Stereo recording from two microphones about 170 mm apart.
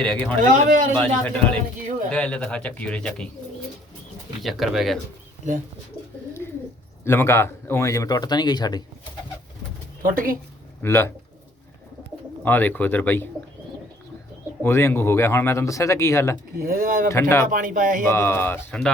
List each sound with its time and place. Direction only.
0.0 s speech: 5° left (ahead or behind)
0.5 s speech: 50° right (ahead or behind)
0.9 s speech: 5° left (ahead or behind)
4.4 s speech: centre (ahead or behind)
7.0 s speech: 15° left (ahead or behind)
10.0 s speech: 55° right (ahead or behind)
10.8 s speech: 15° left (ahead or behind)
12.5 s speech: 10° left (ahead or behind)
14.6 s speech: 15° left (ahead or behind)
16.6 s speech: 55° right (ahead or behind)
17.1 s speech: 15° left (ahead or behind)
17.5 s speech: 50° right (ahead or behind)
18.0 s speech: 15° left (ahead or behind)